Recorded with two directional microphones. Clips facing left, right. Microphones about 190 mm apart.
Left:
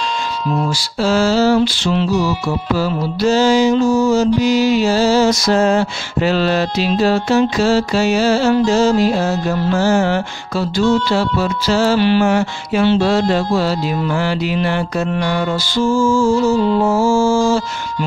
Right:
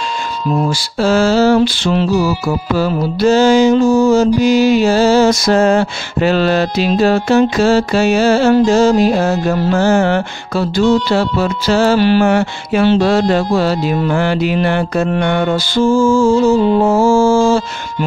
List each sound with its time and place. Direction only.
0.7 s music: 55° right (ahead or behind)
4.4 s mantra: 50° right (ahead or behind)